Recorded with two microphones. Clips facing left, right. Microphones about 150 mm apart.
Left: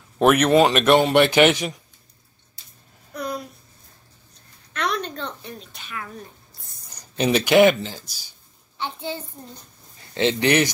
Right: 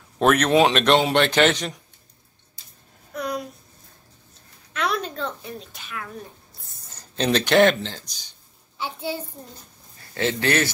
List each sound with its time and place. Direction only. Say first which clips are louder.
0.2 s speech: left 2 dB; 10° left (ahead or behind)
3.1 s a sound: right 1 dB; centre (ahead or behind)
4.7 s a child's voice: even; 5° right (ahead or behind)
6.6 s a sound: left 1 dB; centre (ahead or behind)
7.2 s speech: left 2 dB; 10° left (ahead or behind)
8.7 s a child's voice: right 1 dB; 10° right (ahead or behind)
9.9 s speech: left 3 dB; 20° left (ahead or behind)